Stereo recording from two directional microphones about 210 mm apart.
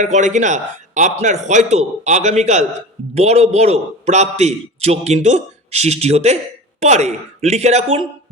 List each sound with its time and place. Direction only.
0.0 s a man's voice: 35° right (ahead or behind)